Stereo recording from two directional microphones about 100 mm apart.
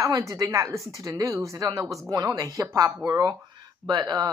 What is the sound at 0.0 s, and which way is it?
A woman's voice, 30° right (ahead or behind).